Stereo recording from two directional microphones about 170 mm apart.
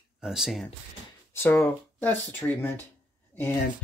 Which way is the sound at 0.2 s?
5° right (ahead or behind).